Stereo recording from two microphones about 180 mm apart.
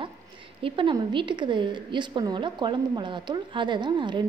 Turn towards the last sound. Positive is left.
turn(degrees=-25)  # may be behind; listen again after turning